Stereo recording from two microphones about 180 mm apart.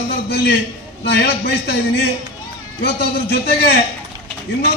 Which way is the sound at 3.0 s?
60° left (ahead or behind).